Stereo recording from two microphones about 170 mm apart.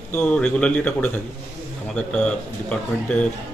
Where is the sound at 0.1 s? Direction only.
5° left (ahead or behind).